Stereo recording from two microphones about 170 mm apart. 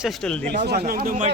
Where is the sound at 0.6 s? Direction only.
65° right (ahead or behind).